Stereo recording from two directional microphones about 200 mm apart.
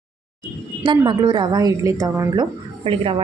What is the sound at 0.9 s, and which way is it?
A woman's voice, 25° right (ahead or behind).